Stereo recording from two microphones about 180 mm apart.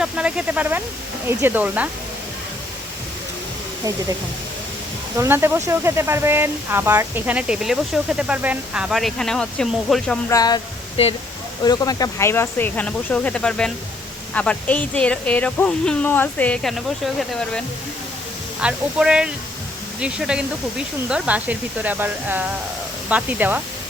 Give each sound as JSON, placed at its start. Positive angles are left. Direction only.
{"t": 0.0, "sound": "speech", "side_deg": -5}
{"t": 5.1, "sound": "speech", "side_deg": -15}
{"t": 10.2, "sound": "speech", "side_deg": 20}
{"t": 18.6, "sound": "speech", "side_deg": -5}